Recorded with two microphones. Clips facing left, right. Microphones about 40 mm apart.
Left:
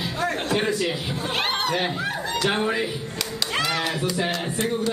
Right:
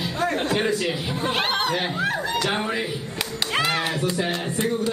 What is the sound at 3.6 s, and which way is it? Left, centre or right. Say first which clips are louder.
Music: right 2 dB; right.